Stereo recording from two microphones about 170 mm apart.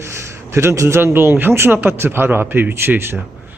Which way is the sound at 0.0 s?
15° right (ahead or behind).